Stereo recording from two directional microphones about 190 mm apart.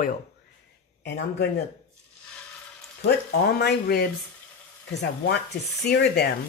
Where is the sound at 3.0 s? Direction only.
55° left (ahead or behind).